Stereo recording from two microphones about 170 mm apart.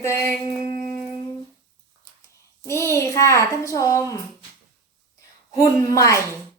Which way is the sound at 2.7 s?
15° left (ahead or behind).